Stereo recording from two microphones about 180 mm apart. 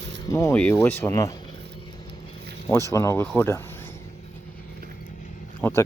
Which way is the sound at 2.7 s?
15° left (ahead or behind).